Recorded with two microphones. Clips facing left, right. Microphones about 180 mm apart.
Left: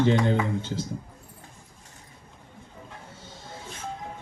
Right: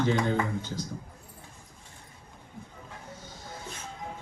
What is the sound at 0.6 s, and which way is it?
Speech, 25° left (ahead or behind).